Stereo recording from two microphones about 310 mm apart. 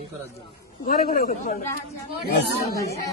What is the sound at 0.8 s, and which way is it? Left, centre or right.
Speech, left.